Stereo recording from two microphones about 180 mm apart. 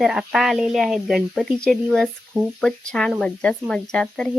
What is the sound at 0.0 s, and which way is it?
Speech, centre (ahead or behind).